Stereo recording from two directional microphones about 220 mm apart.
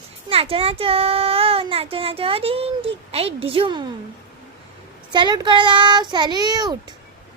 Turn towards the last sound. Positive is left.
turn(degrees=-20)  # may be behind; listen again after turning